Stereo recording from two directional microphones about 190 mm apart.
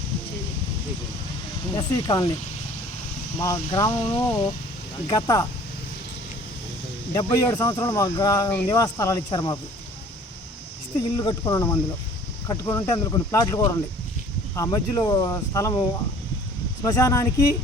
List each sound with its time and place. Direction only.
1.7 s speech: 20° left (ahead or behind)
3.4 s speech: 15° left (ahead or behind)
7.1 s speech: 20° left (ahead or behind)
11.2 s speech: 20° left (ahead or behind)